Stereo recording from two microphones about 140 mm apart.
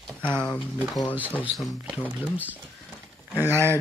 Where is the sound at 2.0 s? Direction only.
10° right (ahead or behind).